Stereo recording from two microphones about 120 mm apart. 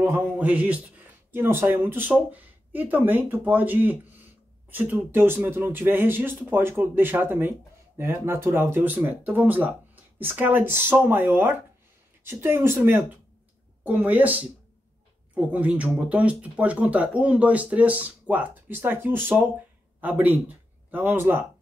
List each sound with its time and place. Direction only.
0.0 s a man's voice: 15° right (ahead or behind)